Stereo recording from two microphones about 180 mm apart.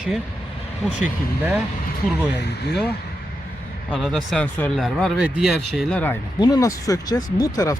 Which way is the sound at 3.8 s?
Centre (ahead or behind).